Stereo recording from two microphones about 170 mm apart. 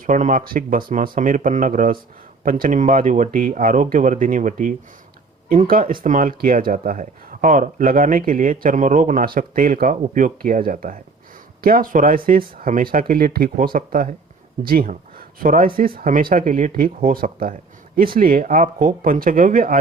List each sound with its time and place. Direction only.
0.0 s speech: 50° right (ahead or behind)